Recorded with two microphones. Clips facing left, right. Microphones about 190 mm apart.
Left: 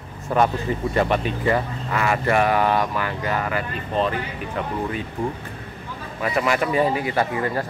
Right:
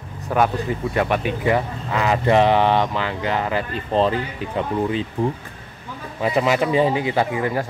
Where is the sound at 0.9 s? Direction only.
10° right (ahead or behind); by 4.1 s 30° right (ahead or behind).